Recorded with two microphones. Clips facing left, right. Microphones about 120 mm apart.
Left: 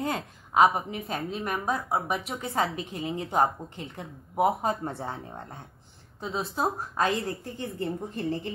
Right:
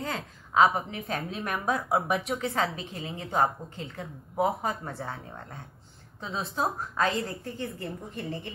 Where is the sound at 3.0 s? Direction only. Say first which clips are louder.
Left 2 dB; 25° left (ahead or behind).